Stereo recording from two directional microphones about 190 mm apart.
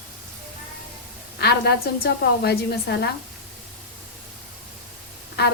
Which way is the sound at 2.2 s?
55° left (ahead or behind).